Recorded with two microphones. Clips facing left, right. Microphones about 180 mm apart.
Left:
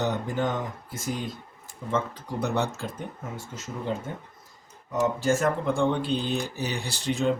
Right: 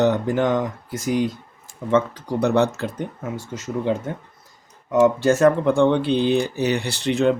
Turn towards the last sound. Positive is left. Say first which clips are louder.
# right 7 dB
turn(degrees=-70)  # may be behind; listen again after turning